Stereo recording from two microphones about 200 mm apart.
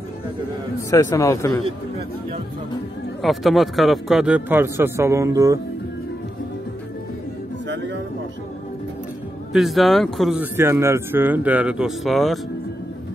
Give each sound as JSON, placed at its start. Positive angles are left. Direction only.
{"t": 0.8, "sound": "a man's voice", "side_deg": 15}
{"t": 3.2, "sound": "speech", "side_deg": 0}
{"t": 7.6, "sound": "music", "side_deg": -65}
{"t": 9.5, "sound": "speech", "side_deg": 0}